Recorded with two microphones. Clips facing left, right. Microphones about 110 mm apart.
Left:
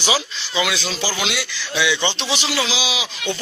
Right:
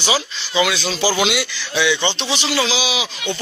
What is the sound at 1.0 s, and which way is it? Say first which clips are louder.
Speech: right 8 dB; 15° right (ahead or behind).